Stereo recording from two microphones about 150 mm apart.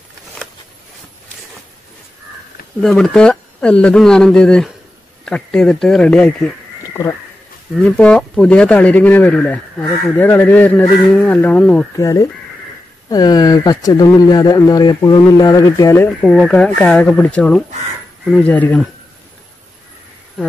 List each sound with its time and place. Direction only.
2.8 s speech: centre (ahead or behind)
6.9 s a sound: 20° left (ahead or behind)
7.8 s speech: 5° left (ahead or behind)
13.1 s speech: 25° left (ahead or behind)
16.2 s speech: centre (ahead or behind)